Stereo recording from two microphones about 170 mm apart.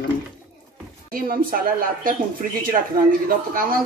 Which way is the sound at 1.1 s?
55° right (ahead or behind).